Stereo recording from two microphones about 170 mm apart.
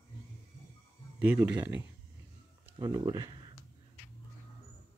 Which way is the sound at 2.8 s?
20° right (ahead or behind).